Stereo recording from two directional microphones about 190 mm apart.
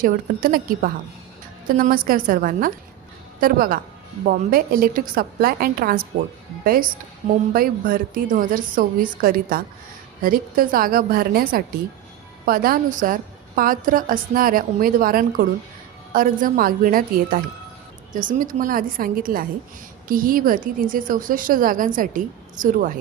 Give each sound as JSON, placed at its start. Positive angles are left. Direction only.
{"t": 0.0, "sound": "a woman's voice", "side_deg": -50}
{"t": 7.5, "sound": "a woman's voice", "side_deg": -50}